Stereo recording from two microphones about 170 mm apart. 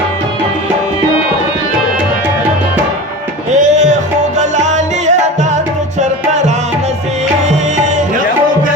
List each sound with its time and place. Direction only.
3.5 s music: 45° right (ahead or behind)